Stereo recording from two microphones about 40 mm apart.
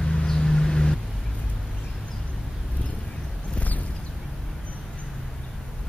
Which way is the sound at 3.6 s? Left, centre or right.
Left.